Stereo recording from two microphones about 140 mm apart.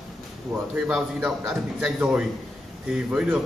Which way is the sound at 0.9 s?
5° right (ahead or behind).